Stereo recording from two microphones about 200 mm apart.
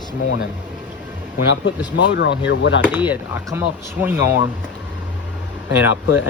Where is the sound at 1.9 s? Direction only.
60° left (ahead or behind).